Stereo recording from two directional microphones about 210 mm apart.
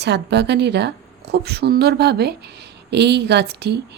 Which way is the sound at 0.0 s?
55° right (ahead or behind).